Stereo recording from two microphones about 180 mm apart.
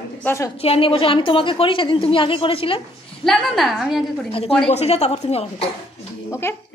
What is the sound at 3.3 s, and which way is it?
A woman's voice, centre (ahead or behind).